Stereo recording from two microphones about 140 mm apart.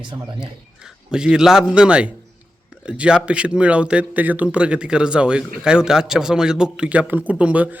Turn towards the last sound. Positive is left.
turn(degrees=-10)  # may be behind; listen again after turning